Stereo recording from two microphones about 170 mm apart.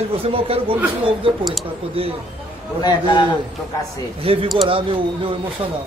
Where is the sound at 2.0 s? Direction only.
35° right (ahead or behind).